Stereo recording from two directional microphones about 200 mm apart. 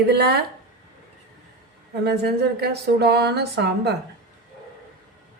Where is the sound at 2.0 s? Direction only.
55° right (ahead or behind).